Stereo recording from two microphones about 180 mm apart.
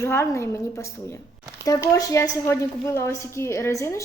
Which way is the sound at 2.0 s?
20° left (ahead or behind).